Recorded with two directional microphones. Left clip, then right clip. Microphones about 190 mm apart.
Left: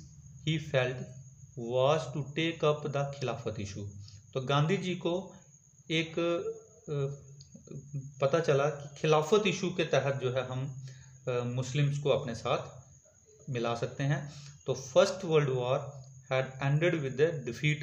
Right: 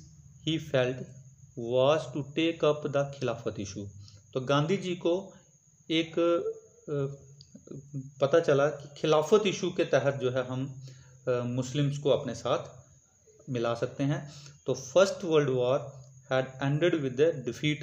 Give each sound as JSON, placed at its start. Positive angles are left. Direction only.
{"t": 0.4, "sound": "speech", "side_deg": -25}
{"t": 8.2, "sound": "speech", "side_deg": -25}